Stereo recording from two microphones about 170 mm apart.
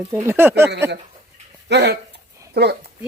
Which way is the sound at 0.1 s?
15° right (ahead or behind).